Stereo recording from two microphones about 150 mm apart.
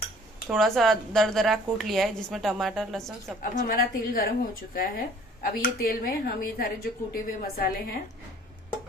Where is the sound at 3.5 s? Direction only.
70° left (ahead or behind).